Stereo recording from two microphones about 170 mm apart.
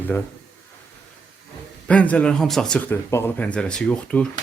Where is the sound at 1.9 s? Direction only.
5° left (ahead or behind).